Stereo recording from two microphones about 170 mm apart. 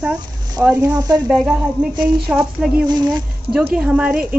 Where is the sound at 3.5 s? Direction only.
5° right (ahead or behind).